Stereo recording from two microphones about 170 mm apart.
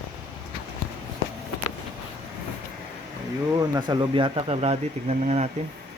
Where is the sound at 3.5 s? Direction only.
20° right (ahead or behind); by 5.5 s 40° right (ahead or behind).